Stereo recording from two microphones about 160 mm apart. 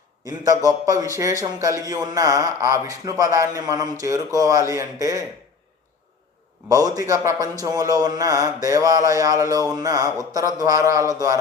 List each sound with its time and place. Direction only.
0.3 s a man's voice: 20° right (ahead or behind)
6.7 s a man's voice: 20° right (ahead or behind)